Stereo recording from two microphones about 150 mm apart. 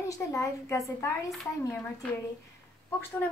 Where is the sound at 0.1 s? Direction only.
20° left (ahead or behind).